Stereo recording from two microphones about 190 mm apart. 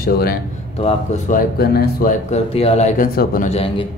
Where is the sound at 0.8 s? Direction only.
35° left (ahead or behind).